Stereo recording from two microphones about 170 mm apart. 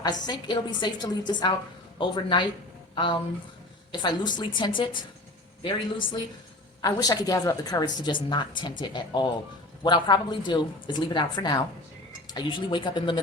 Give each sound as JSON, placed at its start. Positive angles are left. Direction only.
{"t": 0.0, "sound": "a woman's voice", "side_deg": 25}